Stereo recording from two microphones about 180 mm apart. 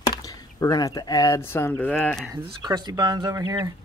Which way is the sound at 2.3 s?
20° right (ahead or behind).